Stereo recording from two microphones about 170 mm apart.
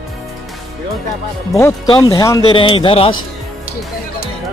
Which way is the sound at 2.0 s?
20° left (ahead or behind).